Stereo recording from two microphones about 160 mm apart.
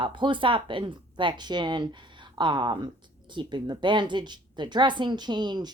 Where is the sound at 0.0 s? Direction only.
30° right (ahead or behind).